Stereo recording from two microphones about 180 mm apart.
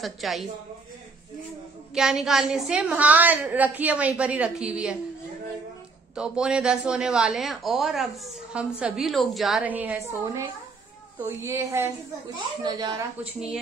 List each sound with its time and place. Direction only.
0.0 s speech: centre (ahead or behind)
2.0 s a woman's voice: 5° right (ahead or behind)
6.1 s a woman's voice: 5° right (ahead or behind); by 13.0 s 25° right (ahead or behind)
13.2 s speech: 5° right (ahead or behind)